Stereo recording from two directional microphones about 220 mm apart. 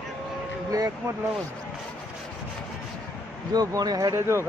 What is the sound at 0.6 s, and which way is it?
Vehicle, 15° right (ahead or behind).